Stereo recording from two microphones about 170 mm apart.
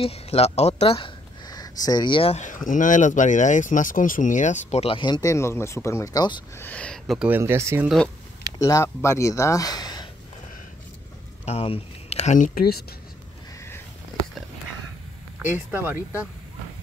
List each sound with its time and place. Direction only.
0.0 s speech: 35° left (ahead or behind)
2.4 s speech: 50° left (ahead or behind); by 6.4 s 25° left (ahead or behind)
6.5 s speech: 10° left (ahead or behind); by 7.9 s 15° right (ahead or behind)
8.5 s speech: 20° left (ahead or behind)
11.4 s speech: 35° left (ahead or behind)
12.5 s speech: 65° left (ahead or behind)
13.6 s sniff: 15° left (ahead or behind)
15.5 s speech: 10° right (ahead or behind)